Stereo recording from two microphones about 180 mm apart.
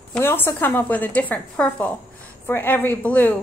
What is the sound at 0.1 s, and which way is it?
A woman's voice, 10° left (ahead or behind).